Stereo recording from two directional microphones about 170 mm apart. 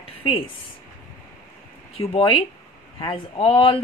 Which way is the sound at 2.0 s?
30° left (ahead or behind).